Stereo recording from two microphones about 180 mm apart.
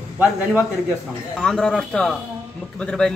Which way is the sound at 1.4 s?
5° left (ahead or behind).